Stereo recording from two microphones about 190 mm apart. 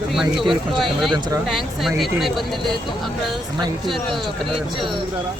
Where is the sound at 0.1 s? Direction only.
Centre (ahead or behind).